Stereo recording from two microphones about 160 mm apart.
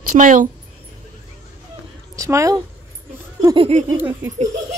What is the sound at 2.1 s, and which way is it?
Speech, 20° right (ahead or behind).